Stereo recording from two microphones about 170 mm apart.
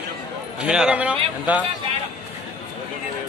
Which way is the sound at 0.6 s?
5° right (ahead or behind).